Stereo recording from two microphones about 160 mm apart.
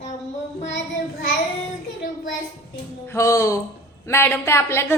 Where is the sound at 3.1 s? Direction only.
20° left (ahead or behind).